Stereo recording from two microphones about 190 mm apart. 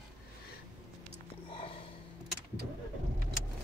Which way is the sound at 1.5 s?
30° left (ahead or behind).